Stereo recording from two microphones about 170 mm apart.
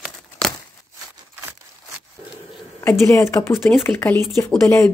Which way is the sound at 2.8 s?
15° left (ahead or behind).